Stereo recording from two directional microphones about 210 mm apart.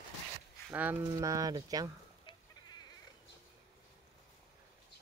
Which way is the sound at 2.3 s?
20° left (ahead or behind).